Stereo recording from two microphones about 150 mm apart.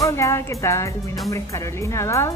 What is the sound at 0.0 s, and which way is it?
Speech, 20° left (ahead or behind).